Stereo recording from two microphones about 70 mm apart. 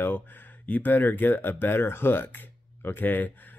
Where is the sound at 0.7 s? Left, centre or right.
Left.